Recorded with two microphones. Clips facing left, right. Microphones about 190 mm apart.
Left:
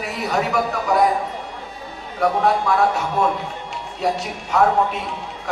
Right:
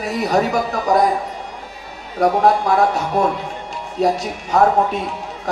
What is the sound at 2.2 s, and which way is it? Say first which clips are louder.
A man's voice: right 3 dB; 40° right (ahead or behind).